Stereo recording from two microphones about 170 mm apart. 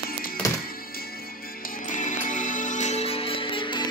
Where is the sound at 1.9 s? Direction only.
50° left (ahead or behind); by 3.9 s 30° left (ahead or behind).